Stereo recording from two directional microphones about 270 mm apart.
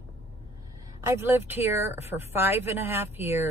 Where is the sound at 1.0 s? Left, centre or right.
Centre.